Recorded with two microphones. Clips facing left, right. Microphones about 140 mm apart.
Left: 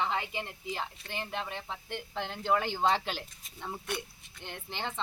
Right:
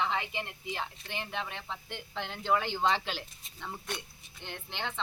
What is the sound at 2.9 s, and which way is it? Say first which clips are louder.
Speech: left 1 dB; 45° left (ahead or behind).